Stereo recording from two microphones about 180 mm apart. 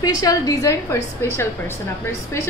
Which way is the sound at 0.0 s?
20° left (ahead or behind).